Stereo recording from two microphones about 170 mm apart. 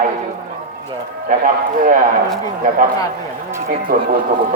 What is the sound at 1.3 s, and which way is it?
Speech, 55° right (ahead or behind).